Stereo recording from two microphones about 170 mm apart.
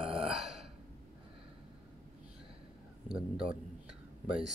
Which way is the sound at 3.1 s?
5° right (ahead or behind).